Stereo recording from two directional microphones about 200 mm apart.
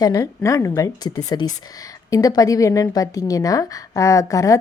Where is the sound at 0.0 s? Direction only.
15° left (ahead or behind).